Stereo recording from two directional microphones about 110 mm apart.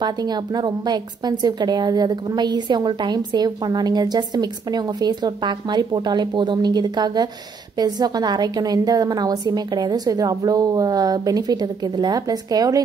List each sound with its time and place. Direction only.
0.0 s a woman's voice: 40° right (ahead or behind)